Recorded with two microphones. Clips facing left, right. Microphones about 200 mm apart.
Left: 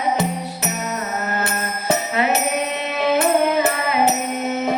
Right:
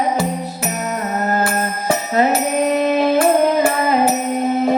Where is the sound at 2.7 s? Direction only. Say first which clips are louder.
Right 7 dB; 40° right (ahead or behind).